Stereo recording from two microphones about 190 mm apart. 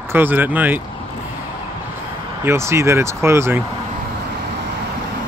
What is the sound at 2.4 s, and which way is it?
Speech, 15° right (ahead or behind).